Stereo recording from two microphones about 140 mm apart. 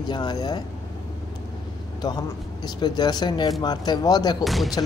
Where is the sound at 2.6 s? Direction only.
30° left (ahead or behind).